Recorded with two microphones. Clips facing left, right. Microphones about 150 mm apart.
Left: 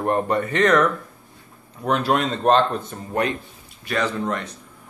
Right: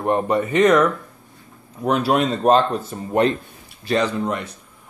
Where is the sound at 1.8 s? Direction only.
5° right (ahead or behind).